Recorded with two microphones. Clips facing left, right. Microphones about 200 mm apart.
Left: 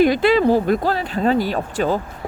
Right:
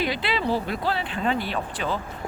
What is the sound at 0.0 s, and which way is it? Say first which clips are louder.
Speech: left 12 dB; 45° left (ahead or behind).